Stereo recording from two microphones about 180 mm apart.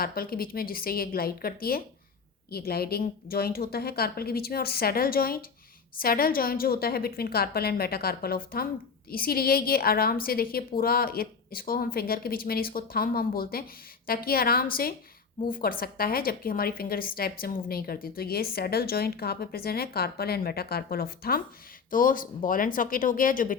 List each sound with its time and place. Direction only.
0.0 s a woman's voice: 55° left (ahead or behind)